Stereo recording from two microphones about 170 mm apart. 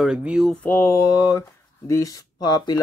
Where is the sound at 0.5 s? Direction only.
10° left (ahead or behind).